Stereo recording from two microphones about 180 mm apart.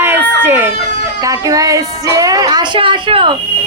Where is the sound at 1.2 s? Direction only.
20° right (ahead or behind).